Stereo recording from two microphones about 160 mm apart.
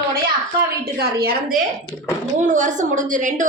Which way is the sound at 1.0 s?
75° right (ahead or behind).